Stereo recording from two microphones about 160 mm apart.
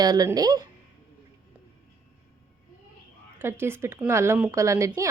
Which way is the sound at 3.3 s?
15° right (ahead or behind).